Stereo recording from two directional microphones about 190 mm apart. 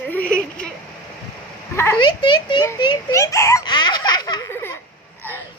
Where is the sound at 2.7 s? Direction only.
20° left (ahead or behind).